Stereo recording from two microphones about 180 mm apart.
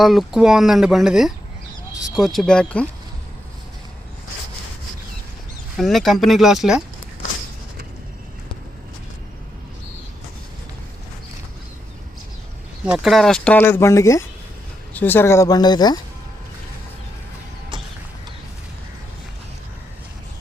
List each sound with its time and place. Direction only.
0.0 s speech: centre (ahead or behind)
5.7 s speech: centre (ahead or behind)
12.8 s speech: 5° right (ahead or behind); by 16.0 s 25° left (ahead or behind)